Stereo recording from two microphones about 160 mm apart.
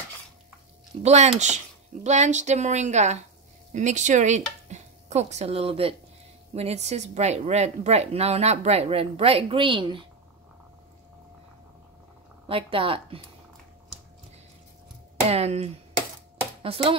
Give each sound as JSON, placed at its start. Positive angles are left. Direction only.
{"t": 1.0, "sound": "a woman's voice", "side_deg": -45}
{"t": 12.4, "sound": "speech", "side_deg": -35}
{"t": 15.2, "sound": "speech", "side_deg": -40}